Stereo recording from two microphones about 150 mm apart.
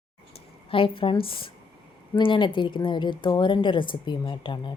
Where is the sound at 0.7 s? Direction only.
35° left (ahead or behind).